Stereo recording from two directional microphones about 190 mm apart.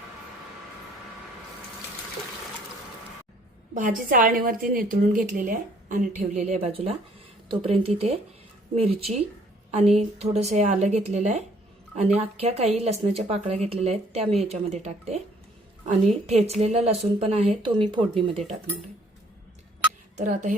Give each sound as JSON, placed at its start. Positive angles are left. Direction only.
{"t": 3.8, "sound": "a woman's voice", "side_deg": -45}
{"t": 20.1, "sound": "speech", "side_deg": -40}